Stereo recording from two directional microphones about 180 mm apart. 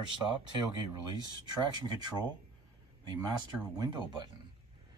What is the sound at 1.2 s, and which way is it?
Speech, 20° right (ahead or behind).